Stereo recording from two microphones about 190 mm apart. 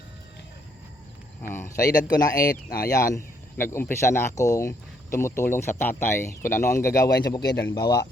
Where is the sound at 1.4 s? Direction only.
10° left (ahead or behind).